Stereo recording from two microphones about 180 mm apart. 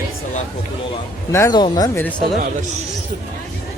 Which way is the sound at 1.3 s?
15° left (ahead or behind).